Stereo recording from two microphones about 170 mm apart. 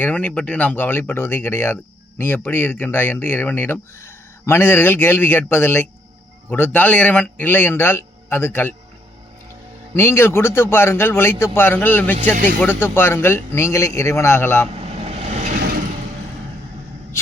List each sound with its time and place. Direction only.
0.0 s speech: 10° left (ahead or behind)
9.9 s speech: 15° left (ahead or behind)
14.8 s vehicle: 35° right (ahead or behind)